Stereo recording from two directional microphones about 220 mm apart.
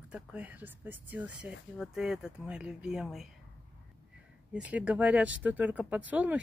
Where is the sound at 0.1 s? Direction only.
5° right (ahead or behind).